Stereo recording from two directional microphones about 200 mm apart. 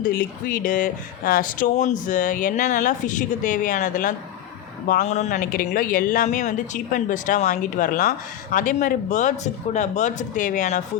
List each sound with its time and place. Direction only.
0.0 s speech: 45° left (ahead or behind)